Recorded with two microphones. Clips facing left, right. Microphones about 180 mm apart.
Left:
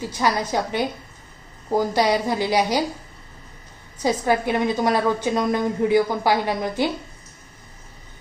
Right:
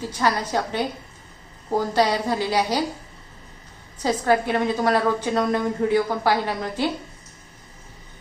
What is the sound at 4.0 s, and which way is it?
A woman's voice, 15° left (ahead or behind).